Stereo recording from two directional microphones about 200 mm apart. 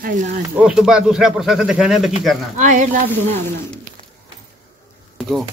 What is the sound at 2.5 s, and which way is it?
Speech, 40° right (ahead or behind).